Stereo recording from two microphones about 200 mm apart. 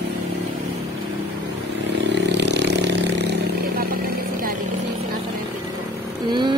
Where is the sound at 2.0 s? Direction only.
60° right (ahead or behind).